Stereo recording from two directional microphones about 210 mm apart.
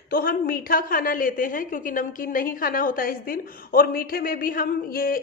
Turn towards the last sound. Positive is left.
turn(degrees=45)  # may be behind; listen again after turning